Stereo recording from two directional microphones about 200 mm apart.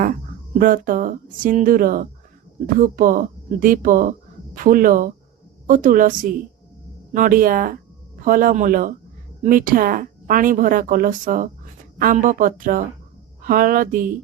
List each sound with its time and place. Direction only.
0.6 s speech: 45° right (ahead or behind)